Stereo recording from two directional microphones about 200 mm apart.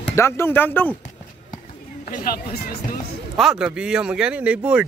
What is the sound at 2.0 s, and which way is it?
Speech, 45° left (ahead or behind).